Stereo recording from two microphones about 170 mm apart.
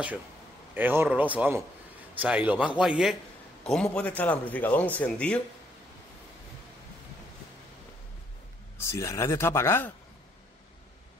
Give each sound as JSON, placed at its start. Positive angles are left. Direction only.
{"t": 0.7, "sound": "a man's voice", "side_deg": -10}
{"t": 8.7, "sound": "a man's voice", "side_deg": 15}